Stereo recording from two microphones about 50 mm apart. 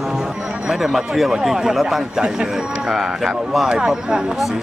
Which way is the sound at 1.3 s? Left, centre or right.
Centre.